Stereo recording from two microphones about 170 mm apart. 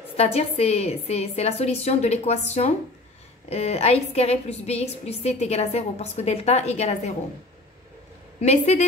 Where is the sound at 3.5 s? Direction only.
35° left (ahead or behind).